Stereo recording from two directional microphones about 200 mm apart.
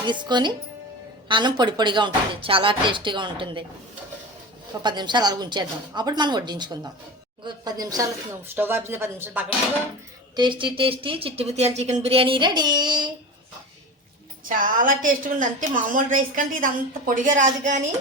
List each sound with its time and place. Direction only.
0.0 s speech: 20° right (ahead or behind)
4.8 s speech: 20° right (ahead or behind)
10.3 s speech: 25° right (ahead or behind)
14.4 s a woman's voice: 45° right (ahead or behind)